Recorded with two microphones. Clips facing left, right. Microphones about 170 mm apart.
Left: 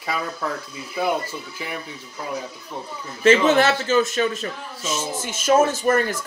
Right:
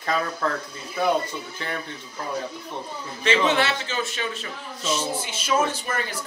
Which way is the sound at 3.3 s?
45° left (ahead or behind).